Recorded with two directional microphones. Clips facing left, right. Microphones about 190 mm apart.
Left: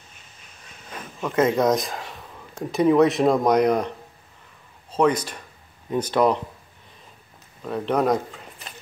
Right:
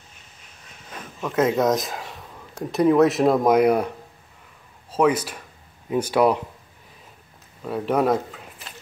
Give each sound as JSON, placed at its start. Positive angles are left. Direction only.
{"t": 1.2, "sound": "speech", "side_deg": 0}
{"t": 4.9, "sound": "speech", "side_deg": -5}
{"t": 7.6, "sound": "speech", "side_deg": -5}